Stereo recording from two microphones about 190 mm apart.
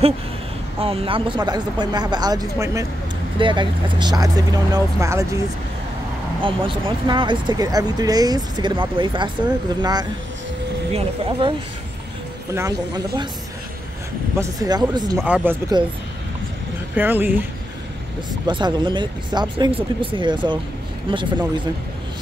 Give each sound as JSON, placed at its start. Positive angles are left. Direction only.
{"t": 0.7, "sound": "speech", "side_deg": -30}
{"t": 6.4, "sound": "speech", "side_deg": -25}
{"t": 12.5, "sound": "speech", "side_deg": -20}
{"t": 14.4, "sound": "speech", "side_deg": -20}
{"t": 15.2, "sound": "speech", "side_deg": -5}
{"t": 16.9, "sound": "speech", "side_deg": -10}
{"t": 18.5, "sound": "speech", "side_deg": -25}